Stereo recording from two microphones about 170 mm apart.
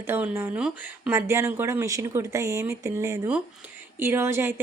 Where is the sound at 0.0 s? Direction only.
10° right (ahead or behind).